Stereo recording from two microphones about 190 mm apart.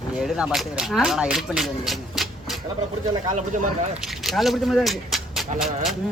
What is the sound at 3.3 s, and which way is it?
Speech, 40° right (ahead or behind).